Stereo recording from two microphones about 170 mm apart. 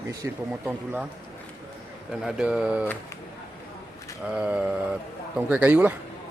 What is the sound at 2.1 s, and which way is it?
Speech, 5° right (ahead or behind).